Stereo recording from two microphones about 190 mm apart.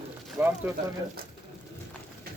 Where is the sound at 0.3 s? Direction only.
10° right (ahead or behind).